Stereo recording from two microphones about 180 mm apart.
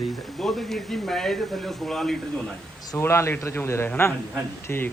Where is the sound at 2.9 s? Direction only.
15° left (ahead or behind).